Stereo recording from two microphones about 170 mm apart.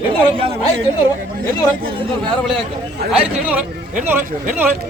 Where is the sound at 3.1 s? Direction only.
5° right (ahead or behind).